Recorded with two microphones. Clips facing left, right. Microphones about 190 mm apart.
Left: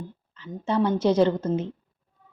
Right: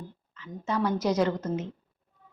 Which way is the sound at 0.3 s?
30° left (ahead or behind).